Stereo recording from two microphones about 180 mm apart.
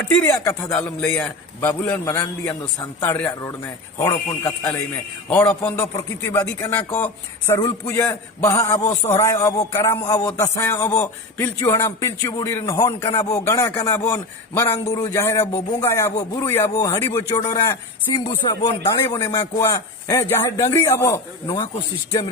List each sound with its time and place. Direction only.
0.9 s a man's voice: 10° left (ahead or behind)